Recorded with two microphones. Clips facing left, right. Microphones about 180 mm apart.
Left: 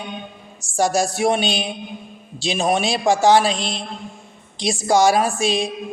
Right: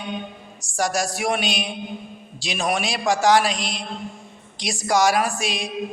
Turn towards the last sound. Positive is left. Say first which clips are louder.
# left 6 dB
turn(degrees=30)  # may be behind; listen again after turning